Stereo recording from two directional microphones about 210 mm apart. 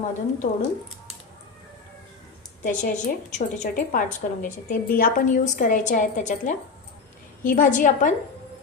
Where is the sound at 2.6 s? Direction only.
35° left (ahead or behind).